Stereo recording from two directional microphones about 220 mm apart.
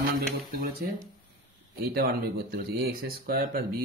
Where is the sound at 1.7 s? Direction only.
45° right (ahead or behind).